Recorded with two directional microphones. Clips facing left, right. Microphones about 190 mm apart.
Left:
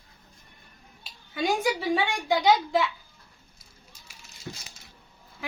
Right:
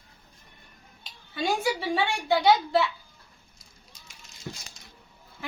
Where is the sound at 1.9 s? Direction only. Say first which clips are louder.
Right 1 dB; 15° left (ahead or behind).